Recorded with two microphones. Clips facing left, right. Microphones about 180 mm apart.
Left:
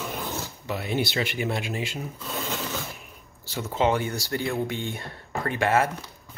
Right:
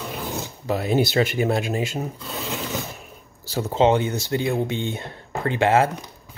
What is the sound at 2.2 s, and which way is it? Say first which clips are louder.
Filing: right 1 dB; centre (ahead or behind).